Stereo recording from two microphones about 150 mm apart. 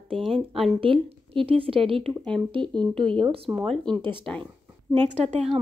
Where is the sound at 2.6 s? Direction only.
5° left (ahead or behind).